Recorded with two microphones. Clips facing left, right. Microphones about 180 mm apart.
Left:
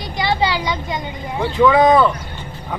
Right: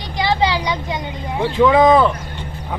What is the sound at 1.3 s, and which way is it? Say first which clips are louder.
Speech: even; 25° right (ahead or behind).